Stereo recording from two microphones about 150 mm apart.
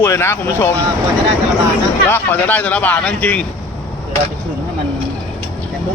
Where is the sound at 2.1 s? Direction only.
15° left (ahead or behind).